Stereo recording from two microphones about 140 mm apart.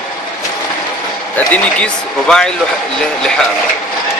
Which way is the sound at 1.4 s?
5° left (ahead or behind).